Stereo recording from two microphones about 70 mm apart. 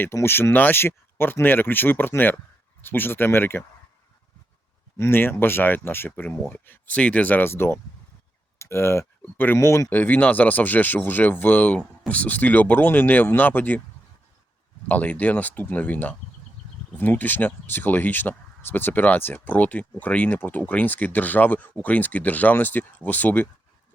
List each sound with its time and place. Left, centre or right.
0.1 s speech: left
4.9 s speech: left
9.9 s speech: left
14.8 s speech: left